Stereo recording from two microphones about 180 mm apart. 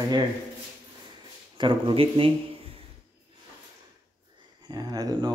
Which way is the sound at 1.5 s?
30° right (ahead or behind).